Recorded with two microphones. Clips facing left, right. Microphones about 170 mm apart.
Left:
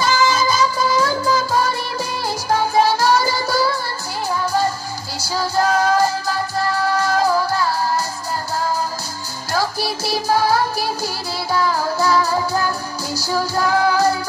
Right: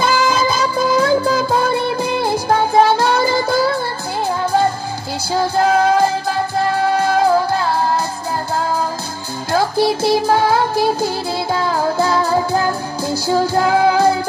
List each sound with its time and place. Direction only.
0.0 s music: 60° right (ahead or behind)
5.3 s music: 55° right (ahead or behind)
9.5 s music: 55° right (ahead or behind)
11.7 s music: 55° right (ahead or behind)